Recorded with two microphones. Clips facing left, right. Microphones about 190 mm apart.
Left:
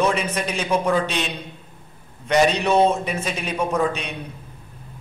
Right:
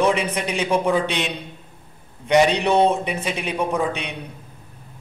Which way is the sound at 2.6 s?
15° right (ahead or behind).